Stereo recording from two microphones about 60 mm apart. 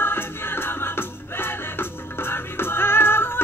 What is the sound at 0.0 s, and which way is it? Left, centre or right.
Music, left.